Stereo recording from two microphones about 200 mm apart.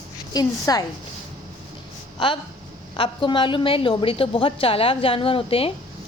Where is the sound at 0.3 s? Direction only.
20° left (ahead or behind).